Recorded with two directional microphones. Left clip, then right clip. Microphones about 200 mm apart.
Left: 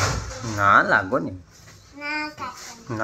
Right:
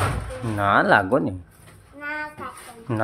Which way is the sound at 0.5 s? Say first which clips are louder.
Left 1 dB; 20° right (ahead or behind).